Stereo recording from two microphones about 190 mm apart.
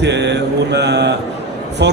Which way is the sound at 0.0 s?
65° right (ahead or behind).